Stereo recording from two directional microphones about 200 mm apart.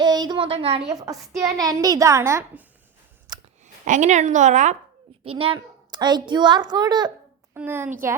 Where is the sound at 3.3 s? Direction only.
20° right (ahead or behind).